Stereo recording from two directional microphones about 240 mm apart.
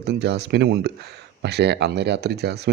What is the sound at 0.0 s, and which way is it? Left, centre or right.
Speech, right.